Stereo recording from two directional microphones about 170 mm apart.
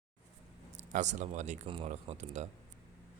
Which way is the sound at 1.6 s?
30° right (ahead or behind).